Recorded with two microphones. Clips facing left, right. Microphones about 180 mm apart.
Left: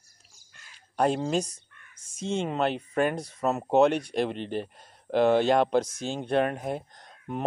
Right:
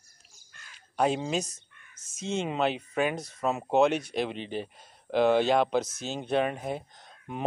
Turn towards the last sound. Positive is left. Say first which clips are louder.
# left 3 dB
turn(degrees=-5)  # may be behind; listen again after turning